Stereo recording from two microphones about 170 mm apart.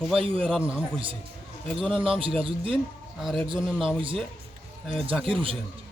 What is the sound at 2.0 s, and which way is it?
Speech, 30° right (ahead or behind).